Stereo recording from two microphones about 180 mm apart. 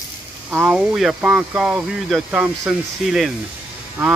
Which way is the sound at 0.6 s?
Centre (ahead or behind).